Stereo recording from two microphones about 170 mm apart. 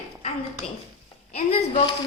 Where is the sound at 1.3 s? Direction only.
35° left (ahead or behind).